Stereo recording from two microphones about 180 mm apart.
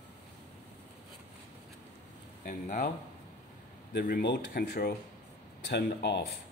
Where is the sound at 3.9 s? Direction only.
65° left (ahead or behind).